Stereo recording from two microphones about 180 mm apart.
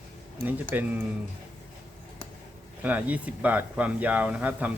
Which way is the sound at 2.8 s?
10° right (ahead or behind).